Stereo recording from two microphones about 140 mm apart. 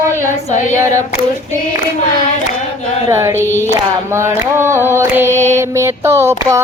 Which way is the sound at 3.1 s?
25° right (ahead or behind).